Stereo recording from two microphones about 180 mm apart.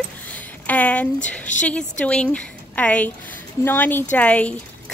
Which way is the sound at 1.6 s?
5° left (ahead or behind).